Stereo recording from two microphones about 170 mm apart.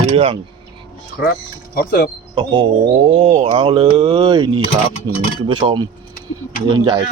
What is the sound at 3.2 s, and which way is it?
Speech, 35° right (ahead or behind).